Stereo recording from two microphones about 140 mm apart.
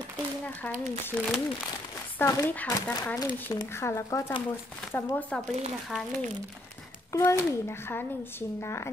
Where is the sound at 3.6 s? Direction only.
20° left (ahead or behind).